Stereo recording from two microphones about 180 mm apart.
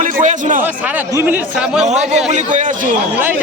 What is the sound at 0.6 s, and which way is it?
Speech, 10° right (ahead or behind).